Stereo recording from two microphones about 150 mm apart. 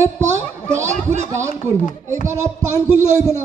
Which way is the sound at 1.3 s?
20° right (ahead or behind).